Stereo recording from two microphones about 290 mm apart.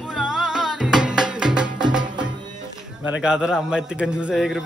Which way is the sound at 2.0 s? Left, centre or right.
Centre.